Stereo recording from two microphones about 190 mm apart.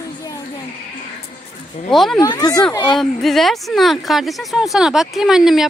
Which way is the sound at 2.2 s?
20° left (ahead or behind).